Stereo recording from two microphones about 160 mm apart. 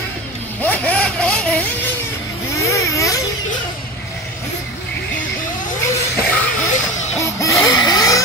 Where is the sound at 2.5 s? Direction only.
20° left (ahead or behind).